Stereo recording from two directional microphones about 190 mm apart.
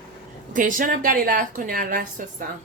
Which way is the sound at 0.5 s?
45° right (ahead or behind).